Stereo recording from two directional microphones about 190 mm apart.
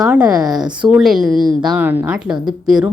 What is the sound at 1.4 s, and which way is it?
Speech, 20° right (ahead or behind).